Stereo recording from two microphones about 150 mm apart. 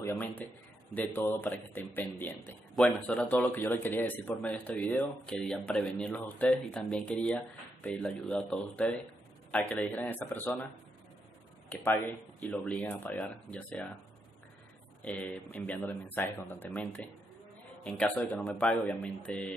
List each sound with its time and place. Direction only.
0.0 s a man's voice: 10° left (ahead or behind)
11.7 s speech: 10° left (ahead or behind)
15.0 s speech: 10° left (ahead or behind)